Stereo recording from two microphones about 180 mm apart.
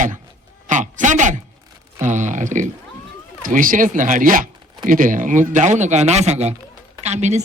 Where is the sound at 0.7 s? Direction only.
45° right (ahead or behind).